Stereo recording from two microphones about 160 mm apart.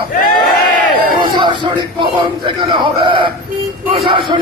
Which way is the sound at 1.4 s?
30° right (ahead or behind).